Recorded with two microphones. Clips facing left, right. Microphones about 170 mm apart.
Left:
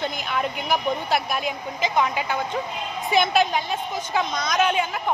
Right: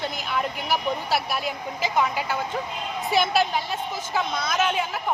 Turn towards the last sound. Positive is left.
turn(degrees=0)  # may be behind; listen again after turning